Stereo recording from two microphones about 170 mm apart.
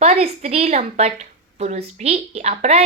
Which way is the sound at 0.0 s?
40° right (ahead or behind).